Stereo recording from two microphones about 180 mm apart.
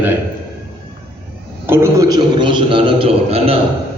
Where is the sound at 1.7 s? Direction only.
15° right (ahead or behind); by 3.5 s 30° right (ahead or behind).